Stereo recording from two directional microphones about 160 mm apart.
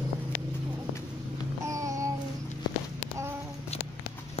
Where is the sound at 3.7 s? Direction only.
40° left (ahead or behind).